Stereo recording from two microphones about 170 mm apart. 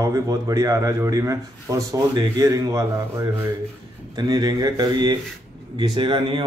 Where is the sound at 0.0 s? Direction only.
20° right (ahead or behind).